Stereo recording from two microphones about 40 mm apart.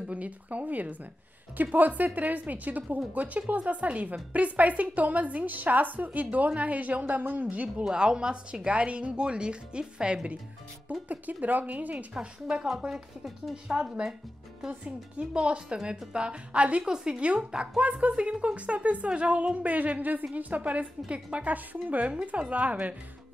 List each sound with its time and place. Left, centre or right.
0.1 s a woman's voice: right
7.4 s a woman's voice: right
7.8 s speech: centre
10.9 s a woman's voice: right
12.1 s speech: right
15.1 s speech: right
16.8 s speech: centre
17.2 s a woman's voice: right